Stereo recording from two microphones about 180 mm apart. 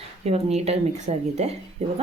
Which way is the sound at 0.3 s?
35° right (ahead or behind).